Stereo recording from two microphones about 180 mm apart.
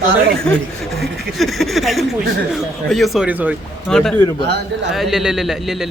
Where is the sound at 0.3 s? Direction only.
5° left (ahead or behind).